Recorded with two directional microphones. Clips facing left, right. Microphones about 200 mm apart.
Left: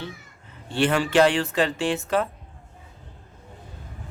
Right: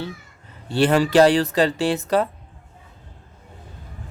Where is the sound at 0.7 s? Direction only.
40° right (ahead or behind).